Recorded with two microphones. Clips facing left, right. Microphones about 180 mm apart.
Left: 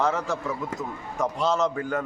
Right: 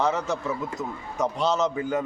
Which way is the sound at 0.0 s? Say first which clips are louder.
Even; centre (ahead or behind).